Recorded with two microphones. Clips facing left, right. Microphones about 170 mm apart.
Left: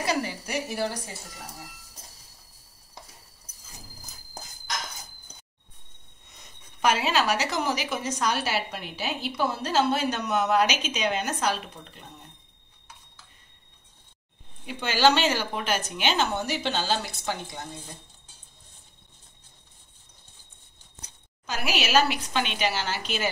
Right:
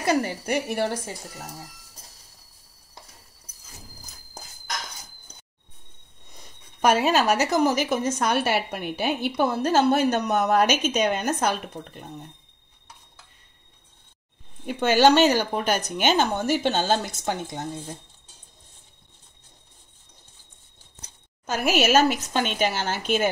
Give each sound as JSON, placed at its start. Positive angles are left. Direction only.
{"t": 0.0, "sound": "a woman's voice", "side_deg": -50}
{"t": 6.8, "sound": "a woman's voice", "side_deg": -50}
{"t": 14.7, "sound": "a woman's voice", "side_deg": -50}
{"t": 21.5, "sound": "a woman's voice", "side_deg": -50}